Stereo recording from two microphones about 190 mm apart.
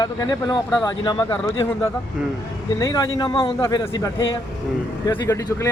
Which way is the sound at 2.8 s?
20° left (ahead or behind).